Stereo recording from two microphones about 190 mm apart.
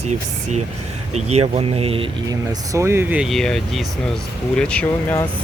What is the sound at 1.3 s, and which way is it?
Speech, 35° right (ahead or behind).